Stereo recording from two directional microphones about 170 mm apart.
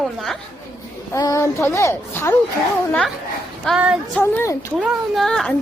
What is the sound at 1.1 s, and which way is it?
Speech, 20° left (ahead or behind).